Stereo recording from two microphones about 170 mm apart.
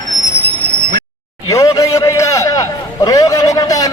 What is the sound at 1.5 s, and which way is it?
A man's voice, 20° left (ahead or behind).